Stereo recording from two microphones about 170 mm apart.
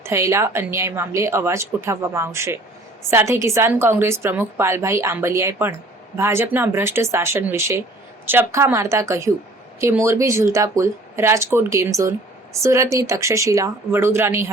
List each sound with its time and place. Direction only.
0.0 s a woman's voice: 15° right (ahead or behind)